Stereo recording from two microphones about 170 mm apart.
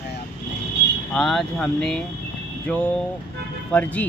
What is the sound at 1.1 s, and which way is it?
Speech, centre (ahead or behind).